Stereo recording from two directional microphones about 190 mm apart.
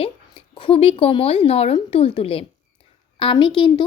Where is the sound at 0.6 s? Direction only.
30° left (ahead or behind).